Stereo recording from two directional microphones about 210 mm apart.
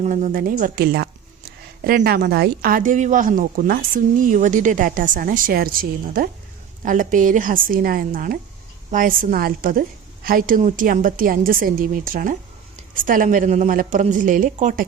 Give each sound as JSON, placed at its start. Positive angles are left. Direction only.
{"t": 0.0, "sound": "speech", "side_deg": -35}